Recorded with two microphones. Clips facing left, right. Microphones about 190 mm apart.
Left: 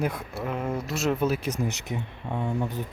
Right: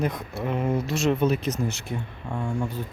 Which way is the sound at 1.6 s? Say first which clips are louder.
Right 1 dB; 15° left (ahead or behind).